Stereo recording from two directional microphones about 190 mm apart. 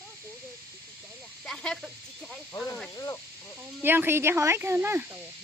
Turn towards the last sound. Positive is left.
turn(degrees=-10)  # may be behind; listen again after turning